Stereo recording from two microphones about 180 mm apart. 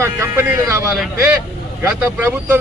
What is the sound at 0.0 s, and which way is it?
Speech, 15° right (ahead or behind).